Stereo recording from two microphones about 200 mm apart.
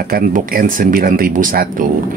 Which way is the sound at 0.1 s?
45° right (ahead or behind).